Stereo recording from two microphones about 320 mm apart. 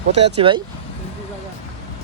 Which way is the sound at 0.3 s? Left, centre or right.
Centre.